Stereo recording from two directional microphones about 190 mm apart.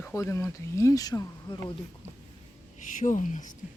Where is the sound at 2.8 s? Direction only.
40° left (ahead or behind).